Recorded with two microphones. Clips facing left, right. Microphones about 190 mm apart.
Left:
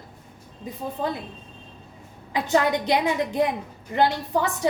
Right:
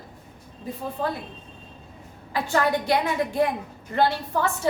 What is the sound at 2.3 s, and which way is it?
A woman's voice, 20° left (ahead or behind).